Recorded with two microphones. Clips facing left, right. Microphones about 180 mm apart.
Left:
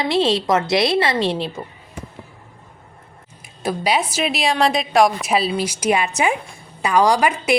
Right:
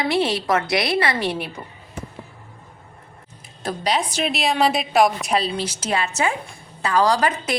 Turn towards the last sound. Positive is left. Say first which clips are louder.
# left 3 dB
turn(degrees=10)  # may be behind; listen again after turning